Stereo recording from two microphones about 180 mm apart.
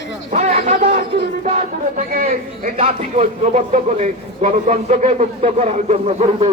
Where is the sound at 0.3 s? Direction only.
40° right (ahead or behind).